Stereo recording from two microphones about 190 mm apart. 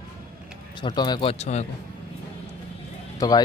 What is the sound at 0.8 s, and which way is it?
Speech, 20° left (ahead or behind).